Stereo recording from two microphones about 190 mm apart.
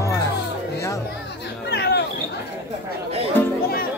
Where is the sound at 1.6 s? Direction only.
60° left (ahead or behind).